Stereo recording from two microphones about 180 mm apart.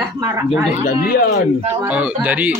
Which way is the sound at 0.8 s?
55° left (ahead or behind).